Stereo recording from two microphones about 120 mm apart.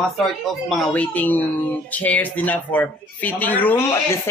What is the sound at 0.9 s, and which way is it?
A man's voice, 15° left (ahead or behind).